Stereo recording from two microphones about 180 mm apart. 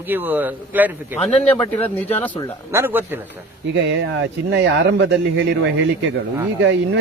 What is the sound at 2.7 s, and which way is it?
Speech, 10° right (ahead or behind).